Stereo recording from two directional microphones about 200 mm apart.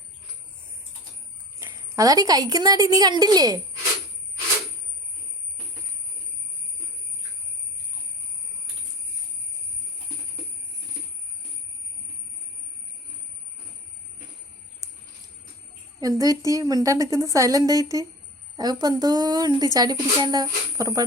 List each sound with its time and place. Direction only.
1.6 s a woman's voice: 15° right (ahead or behind)
16.0 s a woman's voice: 20° right (ahead or behind)